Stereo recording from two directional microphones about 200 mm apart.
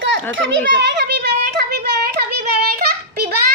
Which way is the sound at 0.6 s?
60° right (ahead or behind).